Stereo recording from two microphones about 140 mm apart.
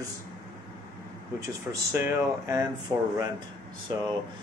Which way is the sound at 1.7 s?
20° right (ahead or behind).